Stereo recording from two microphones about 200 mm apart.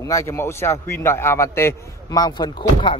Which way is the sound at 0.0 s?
15° left (ahead or behind).